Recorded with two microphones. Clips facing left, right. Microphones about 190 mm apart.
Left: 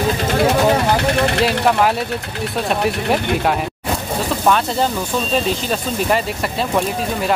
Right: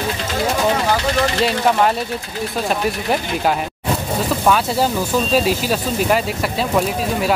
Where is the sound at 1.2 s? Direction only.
60° left (ahead or behind).